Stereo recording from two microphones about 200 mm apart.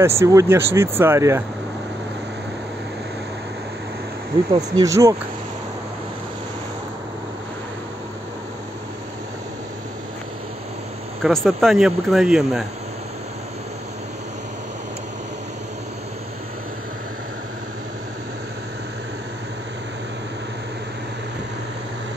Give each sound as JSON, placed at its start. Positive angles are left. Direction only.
{"t": 0.0, "sound": "speech", "side_deg": -15}
{"t": 4.6, "sound": "speech", "side_deg": -15}
{"t": 11.2, "sound": "speech", "side_deg": 0}